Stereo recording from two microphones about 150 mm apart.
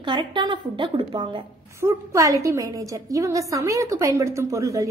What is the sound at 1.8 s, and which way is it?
A woman's voice, 20° right (ahead or behind).